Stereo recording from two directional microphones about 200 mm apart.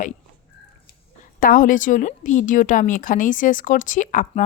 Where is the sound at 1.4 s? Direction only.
45° left (ahead or behind).